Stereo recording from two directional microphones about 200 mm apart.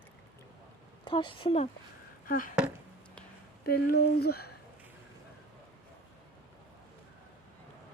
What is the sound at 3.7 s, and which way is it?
Speech, 50° left (ahead or behind).